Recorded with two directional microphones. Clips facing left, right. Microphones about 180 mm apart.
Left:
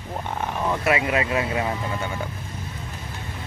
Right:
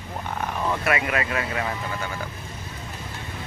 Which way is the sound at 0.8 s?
20° left (ahead or behind).